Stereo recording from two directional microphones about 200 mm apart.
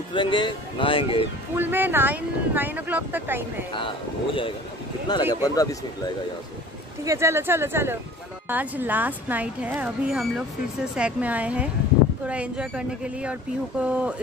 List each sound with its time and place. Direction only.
0.1 s speech: 25° left (ahead or behind)
1.5 s speech: 10° right (ahead or behind)
3.7 s speech: 25° left (ahead or behind)
7.1 s speech: 15° right (ahead or behind)